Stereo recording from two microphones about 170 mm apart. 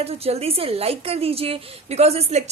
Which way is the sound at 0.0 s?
35° right (ahead or behind).